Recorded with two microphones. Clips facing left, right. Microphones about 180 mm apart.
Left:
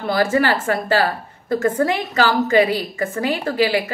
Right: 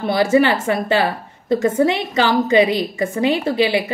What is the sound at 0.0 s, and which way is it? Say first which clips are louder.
A woman's voice: right 3 dB; 15° right (ahead or behind).